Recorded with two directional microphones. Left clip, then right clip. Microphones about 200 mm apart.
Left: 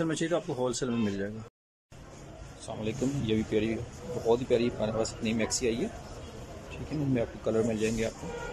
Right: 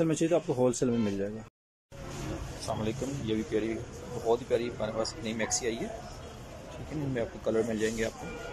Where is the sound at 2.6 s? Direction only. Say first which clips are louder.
Left 1 dB; 15° left (ahead or behind).